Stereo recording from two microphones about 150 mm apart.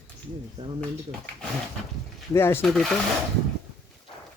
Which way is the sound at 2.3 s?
15° left (ahead or behind).